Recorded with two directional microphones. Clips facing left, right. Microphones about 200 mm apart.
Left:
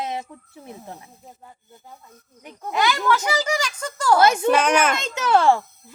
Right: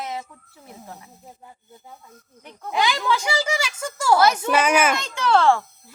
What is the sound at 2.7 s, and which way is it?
Speech, 15° right (ahead or behind).